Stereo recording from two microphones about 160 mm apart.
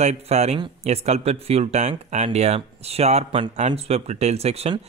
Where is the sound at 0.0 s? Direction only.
45° right (ahead or behind).